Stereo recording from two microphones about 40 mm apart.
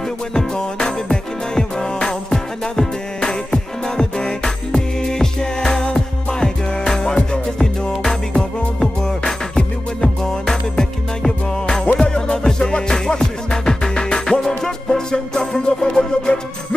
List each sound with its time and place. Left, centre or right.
0.3 s music: centre